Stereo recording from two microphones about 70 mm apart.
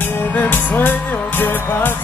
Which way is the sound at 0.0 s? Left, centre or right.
Left.